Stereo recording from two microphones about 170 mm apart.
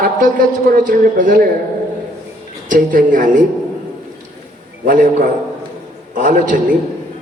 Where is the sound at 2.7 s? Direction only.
50° right (ahead or behind).